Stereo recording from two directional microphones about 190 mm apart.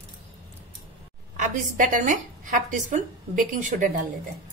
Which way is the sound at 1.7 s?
45° right (ahead or behind).